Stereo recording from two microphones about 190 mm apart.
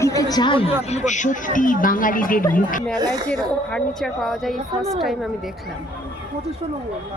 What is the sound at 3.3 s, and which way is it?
Speech, 5° left (ahead or behind).